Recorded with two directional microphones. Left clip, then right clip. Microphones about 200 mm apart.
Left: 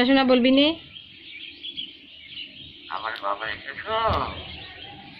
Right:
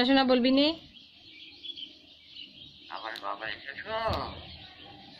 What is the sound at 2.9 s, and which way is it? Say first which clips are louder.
Speech: left 8 dB; 25° right (ahead or behind).